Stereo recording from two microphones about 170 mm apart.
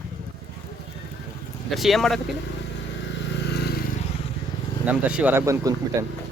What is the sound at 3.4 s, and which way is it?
Vehicle, 75° left (ahead or behind).